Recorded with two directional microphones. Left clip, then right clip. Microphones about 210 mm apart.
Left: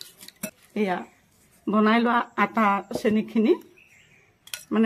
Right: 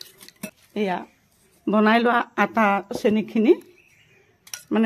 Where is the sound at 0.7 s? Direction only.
30° right (ahead or behind).